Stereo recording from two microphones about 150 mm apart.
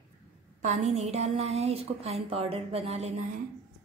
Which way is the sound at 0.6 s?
50° right (ahead or behind).